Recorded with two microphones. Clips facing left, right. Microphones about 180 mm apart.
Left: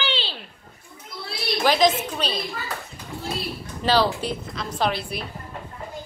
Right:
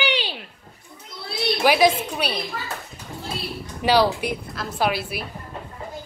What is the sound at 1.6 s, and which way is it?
Speech, 10° right (ahead or behind).